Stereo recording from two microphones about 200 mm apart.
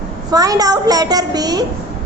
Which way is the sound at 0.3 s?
20° right (ahead or behind).